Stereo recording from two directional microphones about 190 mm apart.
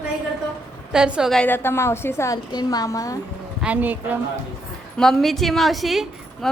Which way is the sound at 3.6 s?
10° right (ahead or behind).